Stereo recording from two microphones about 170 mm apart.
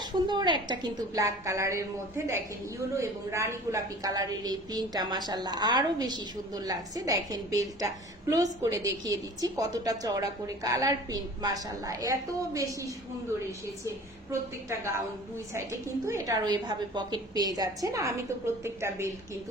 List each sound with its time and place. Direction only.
0.0 s a woman's voice: 25° right (ahead or behind)
14.7 s a woman's voice: 15° right (ahead or behind)
16.0 s a woman's voice: 20° right (ahead or behind)